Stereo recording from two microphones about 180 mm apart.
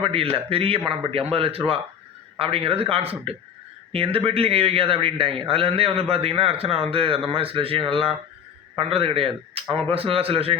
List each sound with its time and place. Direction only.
0.0 s a man's voice: 30° right (ahead or behind)